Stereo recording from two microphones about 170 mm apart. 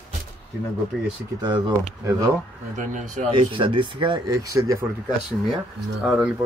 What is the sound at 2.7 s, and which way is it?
Speech, 45° right (ahead or behind).